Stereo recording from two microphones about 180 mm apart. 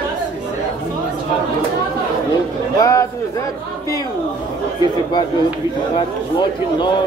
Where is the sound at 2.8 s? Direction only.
20° left (ahead or behind).